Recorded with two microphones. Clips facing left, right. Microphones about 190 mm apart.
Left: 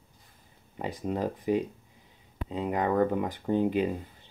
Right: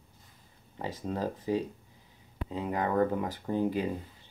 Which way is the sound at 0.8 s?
15° left (ahead or behind).